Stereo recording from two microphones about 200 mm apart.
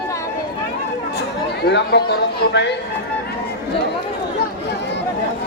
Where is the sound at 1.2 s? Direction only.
55° left (ahead or behind).